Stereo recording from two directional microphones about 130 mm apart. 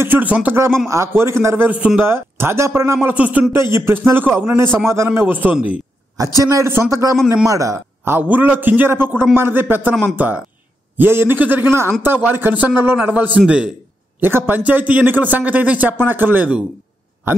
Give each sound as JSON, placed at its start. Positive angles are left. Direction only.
{"t": 0.0, "sound": "a man's voice", "side_deg": -15}
{"t": 6.1, "sound": "a man's voice", "side_deg": -25}